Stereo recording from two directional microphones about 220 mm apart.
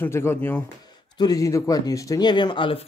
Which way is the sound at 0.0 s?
10° left (ahead or behind).